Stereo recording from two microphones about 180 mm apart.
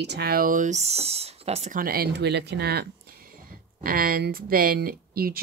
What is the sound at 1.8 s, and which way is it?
Speech, 55° right (ahead or behind).